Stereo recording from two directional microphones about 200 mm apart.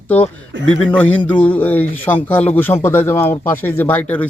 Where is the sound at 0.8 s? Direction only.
5° left (ahead or behind).